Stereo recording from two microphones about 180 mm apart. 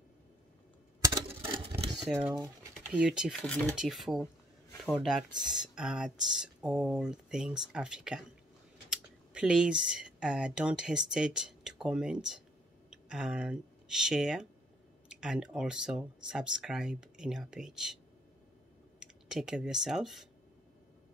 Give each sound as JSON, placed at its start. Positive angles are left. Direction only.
{"t": 1.0, "sound": "a sound", "side_deg": -20}
{"t": 2.1, "sound": "speech", "side_deg": -15}
{"t": 2.9, "sound": "speech", "side_deg": -5}
{"t": 18.9, "sound": "speech", "side_deg": -5}